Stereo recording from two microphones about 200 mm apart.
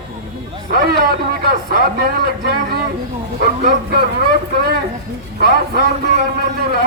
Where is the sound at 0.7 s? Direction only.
50° right (ahead or behind).